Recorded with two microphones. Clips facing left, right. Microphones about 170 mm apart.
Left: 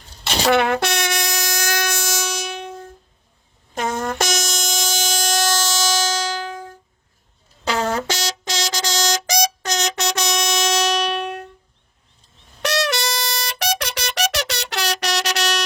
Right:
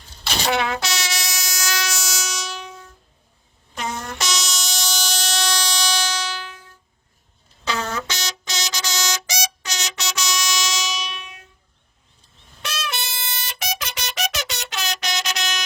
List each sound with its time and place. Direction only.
0.4 s train: 60° left (ahead or behind)
3.8 s a sound: 50° left (ahead or behind)
12.6 s music: 70° left (ahead or behind)